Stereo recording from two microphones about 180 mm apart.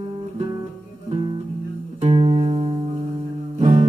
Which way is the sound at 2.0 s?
35° right (ahead or behind).